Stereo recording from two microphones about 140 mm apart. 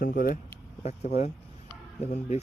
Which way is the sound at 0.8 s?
50° left (ahead or behind).